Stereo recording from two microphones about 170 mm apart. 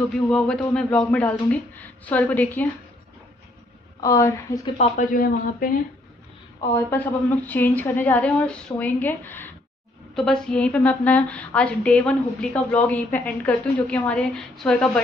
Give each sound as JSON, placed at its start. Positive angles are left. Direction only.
{"t": 0.3, "sound": "a woman's voice", "side_deg": 5}
{"t": 4.0, "sound": "a woman's voice", "side_deg": 20}
{"t": 4.7, "sound": "speech", "side_deg": 45}
{"t": 6.7, "sound": "a woman's voice", "side_deg": 10}